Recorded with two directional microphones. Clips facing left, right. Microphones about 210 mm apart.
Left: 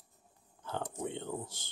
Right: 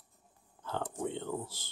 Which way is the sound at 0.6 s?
15° left (ahead or behind).